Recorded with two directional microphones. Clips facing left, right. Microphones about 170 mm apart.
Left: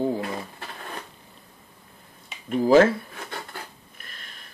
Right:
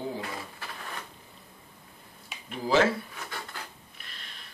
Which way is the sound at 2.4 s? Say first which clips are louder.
Left 8 dB; 50° left (ahead or behind).